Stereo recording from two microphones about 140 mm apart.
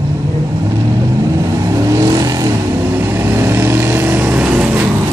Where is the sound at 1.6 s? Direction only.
25° right (ahead or behind); by 4.9 s 10° right (ahead or behind).